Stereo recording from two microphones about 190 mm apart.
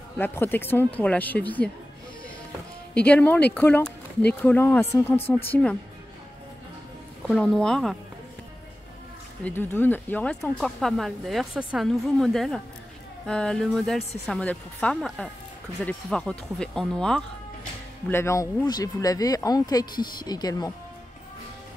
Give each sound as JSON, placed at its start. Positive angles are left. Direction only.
{"t": 0.2, "sound": "speech", "side_deg": 10}
{"t": 2.9, "sound": "speech", "side_deg": 5}
{"t": 7.2, "sound": "speech", "side_deg": 5}
{"t": 9.4, "sound": "speech", "side_deg": 10}